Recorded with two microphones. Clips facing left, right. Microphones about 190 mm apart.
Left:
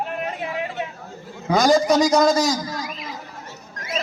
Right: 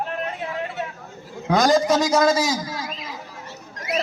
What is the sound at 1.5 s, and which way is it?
A man's voice, centre (ahead or behind).